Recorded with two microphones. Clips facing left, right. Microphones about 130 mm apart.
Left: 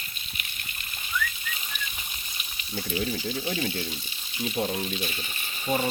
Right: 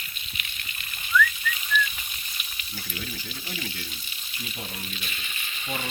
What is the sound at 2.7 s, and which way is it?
Speech, 40° left (ahead or behind).